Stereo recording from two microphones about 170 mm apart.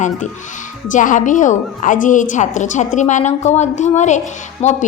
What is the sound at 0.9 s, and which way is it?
A woman's voice, 50° left (ahead or behind).